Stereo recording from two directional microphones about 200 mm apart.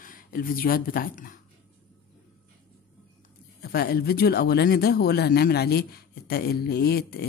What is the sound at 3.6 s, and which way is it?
Speech, 50° left (ahead or behind).